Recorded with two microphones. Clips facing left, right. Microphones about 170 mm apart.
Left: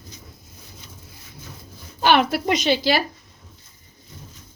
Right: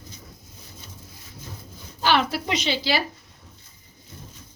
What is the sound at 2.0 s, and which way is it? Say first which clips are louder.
Speech: left 4 dB; 55° left (ahead or behind).